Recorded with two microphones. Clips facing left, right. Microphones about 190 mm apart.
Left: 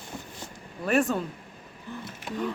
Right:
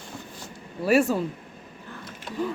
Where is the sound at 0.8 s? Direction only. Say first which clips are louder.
Right 4 dB; 5° right (ahead or behind).